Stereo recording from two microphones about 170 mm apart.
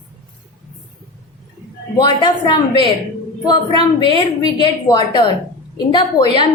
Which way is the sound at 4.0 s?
25° left (ahead or behind).